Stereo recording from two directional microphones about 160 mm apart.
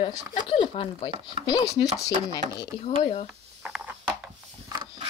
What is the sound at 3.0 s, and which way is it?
Speech, 40° left (ahead or behind).